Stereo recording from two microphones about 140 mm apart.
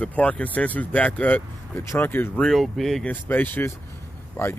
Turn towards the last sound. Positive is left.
turn(degrees=20)  # may be behind; listen again after turning